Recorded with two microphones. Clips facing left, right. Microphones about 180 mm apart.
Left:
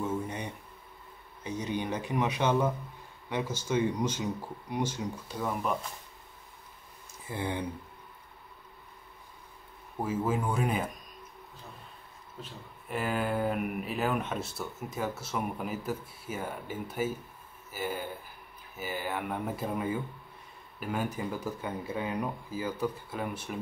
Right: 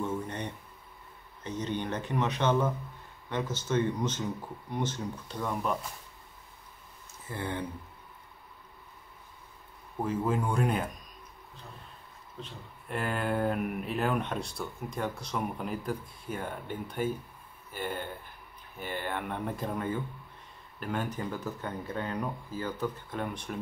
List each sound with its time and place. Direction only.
0.0 s a sound: 10° left (ahead or behind)
1.4 s speech: 10° left (ahead or behind)
7.2 s speech: 15° left (ahead or behind)
9.9 s speech: 5° left (ahead or behind)
12.4 s speech: centre (ahead or behind)